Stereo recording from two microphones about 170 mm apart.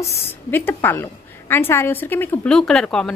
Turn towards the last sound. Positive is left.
turn(degrees=5)  # may be behind; listen again after turning